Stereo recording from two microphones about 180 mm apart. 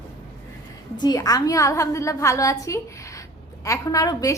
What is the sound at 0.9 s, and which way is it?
A woman's voice, 20° left (ahead or behind).